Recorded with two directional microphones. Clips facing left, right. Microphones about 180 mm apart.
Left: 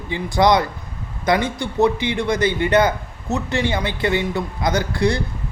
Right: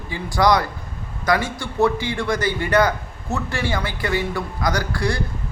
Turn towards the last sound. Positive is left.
turn(degrees=20)  # may be behind; listen again after turning